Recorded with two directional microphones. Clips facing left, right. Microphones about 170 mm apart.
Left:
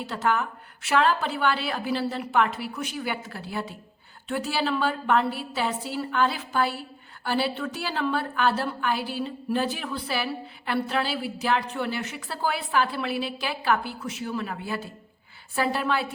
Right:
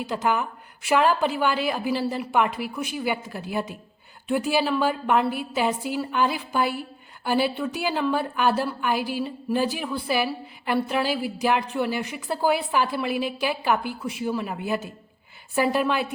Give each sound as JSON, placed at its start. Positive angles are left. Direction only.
{"t": 0.0, "sound": "a woman's voice", "side_deg": -15}